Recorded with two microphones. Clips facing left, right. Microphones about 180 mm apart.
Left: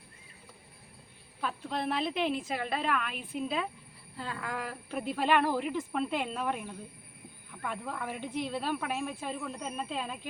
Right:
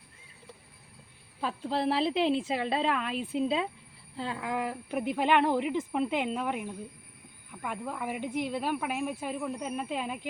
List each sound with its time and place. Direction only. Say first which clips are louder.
1.4 s speech: right 4 dB; 30° right (ahead or behind); by 10.2 s 10° right (ahead or behind)